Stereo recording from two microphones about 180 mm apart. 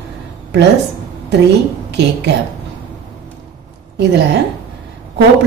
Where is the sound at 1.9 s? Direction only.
70° right (ahead or behind).